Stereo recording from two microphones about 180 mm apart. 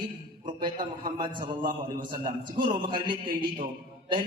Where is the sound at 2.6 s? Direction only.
25° right (ahead or behind).